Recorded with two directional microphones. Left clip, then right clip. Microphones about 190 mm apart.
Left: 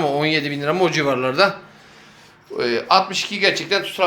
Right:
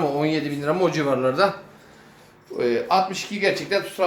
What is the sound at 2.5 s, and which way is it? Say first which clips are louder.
Speech: left 3 dB; centre (ahead or behind).